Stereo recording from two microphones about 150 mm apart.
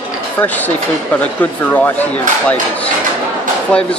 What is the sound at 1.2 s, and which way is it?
Speech, 10° left (ahead or behind).